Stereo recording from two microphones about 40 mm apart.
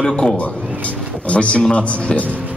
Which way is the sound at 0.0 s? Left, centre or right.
Left.